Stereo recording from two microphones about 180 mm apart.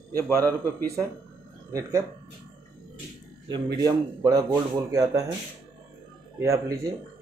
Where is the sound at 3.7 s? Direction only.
20° right (ahead or behind).